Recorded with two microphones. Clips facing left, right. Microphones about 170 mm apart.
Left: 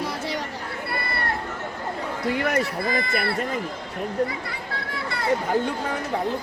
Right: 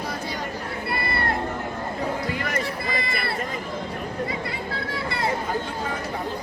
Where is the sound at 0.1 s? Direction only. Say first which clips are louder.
Left 2 dB; 75° left (ahead or behind).